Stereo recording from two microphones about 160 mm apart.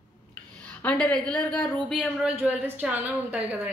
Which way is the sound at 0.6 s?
10° left (ahead or behind).